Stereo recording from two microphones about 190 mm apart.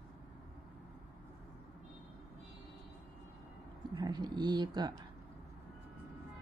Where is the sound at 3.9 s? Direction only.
20° right (ahead or behind).